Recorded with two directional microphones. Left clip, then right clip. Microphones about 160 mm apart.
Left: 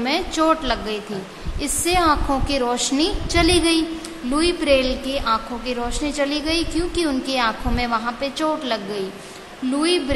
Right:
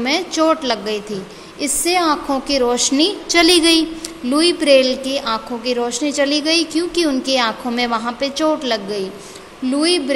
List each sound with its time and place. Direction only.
0.0 s a woman's voice: 20° right (ahead or behind)